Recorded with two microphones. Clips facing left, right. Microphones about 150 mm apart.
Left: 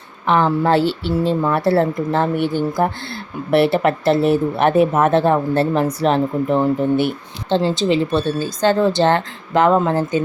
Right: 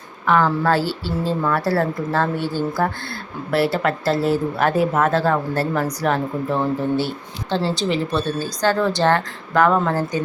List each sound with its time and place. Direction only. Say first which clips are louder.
0.3 s speech: left 2 dB; 20° left (ahead or behind)